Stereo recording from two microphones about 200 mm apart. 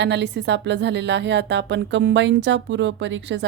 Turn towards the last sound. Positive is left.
turn(degrees=-65)  # may be behind; listen again after turning